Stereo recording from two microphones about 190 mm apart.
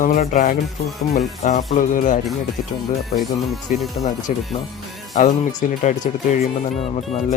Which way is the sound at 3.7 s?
45° left (ahead or behind).